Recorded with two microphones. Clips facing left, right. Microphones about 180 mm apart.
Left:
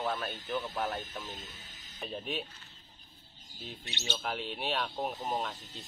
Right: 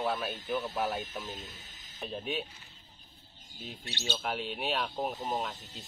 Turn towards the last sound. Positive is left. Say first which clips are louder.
# right 1 dB
turn(degrees=-5)  # may be behind; listen again after turning